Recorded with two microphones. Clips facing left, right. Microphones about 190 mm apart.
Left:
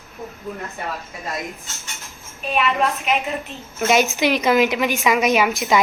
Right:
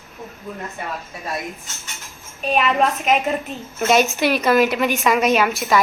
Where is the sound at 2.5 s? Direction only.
40° right (ahead or behind).